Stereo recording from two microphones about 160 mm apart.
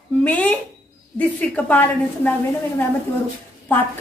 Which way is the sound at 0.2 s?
10° left (ahead or behind).